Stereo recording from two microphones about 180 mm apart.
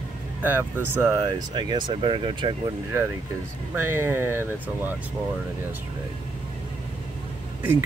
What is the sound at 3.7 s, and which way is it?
Speech, 15° right (ahead or behind).